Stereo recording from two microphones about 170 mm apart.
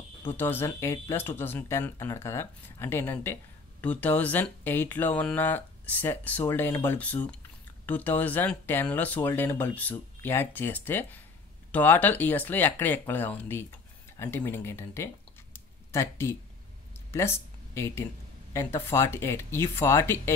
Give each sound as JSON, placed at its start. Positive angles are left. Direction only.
{"t": 0.3, "sound": "speech", "side_deg": 15}
{"t": 15.5, "sound": "a sound", "side_deg": 15}
{"t": 18.5, "sound": "speech", "side_deg": 15}